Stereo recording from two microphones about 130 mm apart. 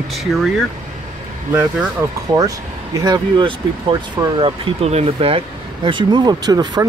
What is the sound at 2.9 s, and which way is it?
Speech, 30° right (ahead or behind).